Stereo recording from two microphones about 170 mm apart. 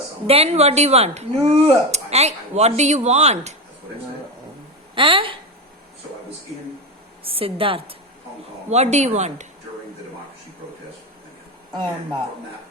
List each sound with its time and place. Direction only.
0.3 s speech: 35° right (ahead or behind)
4.9 s speech: 30° right (ahead or behind)
7.3 s a woman's voice: 30° right (ahead or behind)
11.7 s speech: 25° right (ahead or behind)